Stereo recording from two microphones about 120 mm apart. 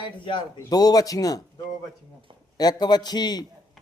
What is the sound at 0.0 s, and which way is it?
Speech, 45° left (ahead or behind).